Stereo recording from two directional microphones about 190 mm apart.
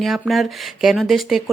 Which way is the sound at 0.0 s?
Centre (ahead or behind).